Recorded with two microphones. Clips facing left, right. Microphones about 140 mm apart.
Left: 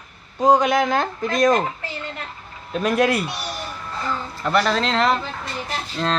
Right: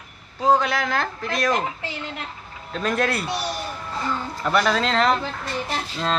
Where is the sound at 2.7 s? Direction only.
10° left (ahead or behind).